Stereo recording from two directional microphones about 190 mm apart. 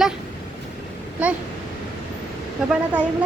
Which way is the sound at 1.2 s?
5° right (ahead or behind).